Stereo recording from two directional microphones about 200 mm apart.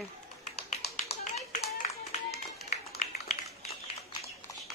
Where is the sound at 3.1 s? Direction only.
30° left (ahead or behind).